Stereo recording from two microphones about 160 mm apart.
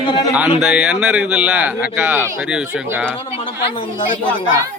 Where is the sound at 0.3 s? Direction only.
5° right (ahead or behind).